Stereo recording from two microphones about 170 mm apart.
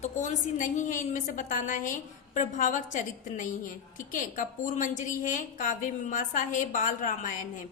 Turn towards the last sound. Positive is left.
turn(degrees=50)  # may be behind; listen again after turning